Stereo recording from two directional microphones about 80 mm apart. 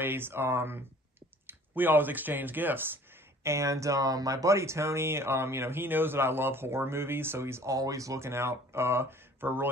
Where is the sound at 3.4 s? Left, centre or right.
Right.